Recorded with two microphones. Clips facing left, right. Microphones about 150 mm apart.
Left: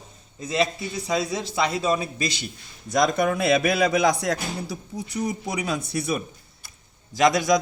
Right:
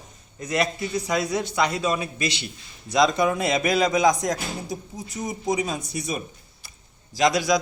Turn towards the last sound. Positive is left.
turn(degrees=50)  # may be behind; listen again after turning